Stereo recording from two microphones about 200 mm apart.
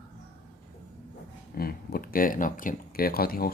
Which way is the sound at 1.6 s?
50° left (ahead or behind).